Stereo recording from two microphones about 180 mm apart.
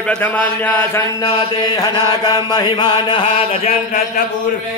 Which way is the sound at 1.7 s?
25° left (ahead or behind).